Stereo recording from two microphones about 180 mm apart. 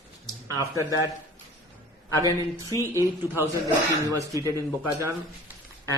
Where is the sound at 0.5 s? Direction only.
20° right (ahead or behind).